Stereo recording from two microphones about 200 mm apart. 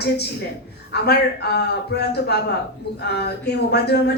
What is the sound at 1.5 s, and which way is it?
Speech, 55° left (ahead or behind).